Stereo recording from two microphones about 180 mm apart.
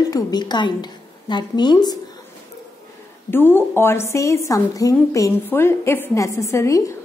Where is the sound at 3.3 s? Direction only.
10° left (ahead or behind).